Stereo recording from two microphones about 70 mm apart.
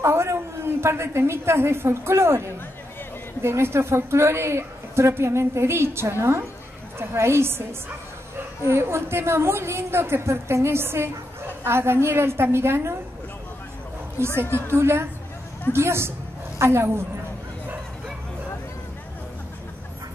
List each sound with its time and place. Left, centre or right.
0.0 s a woman's voice: right
3.4 s a woman's voice: right
14.5 s a woman's voice: right